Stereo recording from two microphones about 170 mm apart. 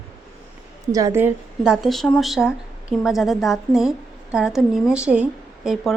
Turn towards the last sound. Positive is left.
turn(degrees=-5)  # may be behind; listen again after turning